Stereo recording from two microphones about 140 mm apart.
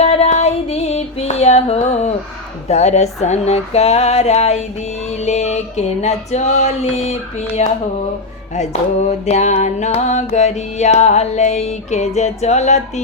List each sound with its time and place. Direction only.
0.0 s female singing: 45° left (ahead or behind)
2.6 s music: 55° left (ahead or behind)